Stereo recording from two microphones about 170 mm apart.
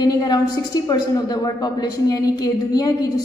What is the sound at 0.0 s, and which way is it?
A woman's voice, 25° left (ahead or behind).